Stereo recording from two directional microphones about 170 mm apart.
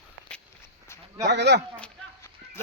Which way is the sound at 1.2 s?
90° right.